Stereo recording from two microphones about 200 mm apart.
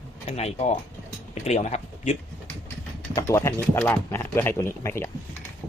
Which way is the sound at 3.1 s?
15° left (ahead or behind).